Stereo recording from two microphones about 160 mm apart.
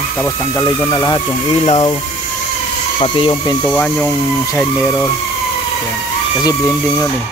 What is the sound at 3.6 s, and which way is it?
Speech, 10° left (ahead or behind).